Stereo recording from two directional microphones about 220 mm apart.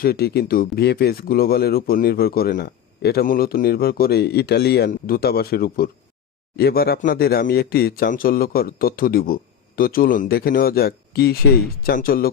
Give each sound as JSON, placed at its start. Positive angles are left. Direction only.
{"t": 0.0, "sound": "speech", "side_deg": 45}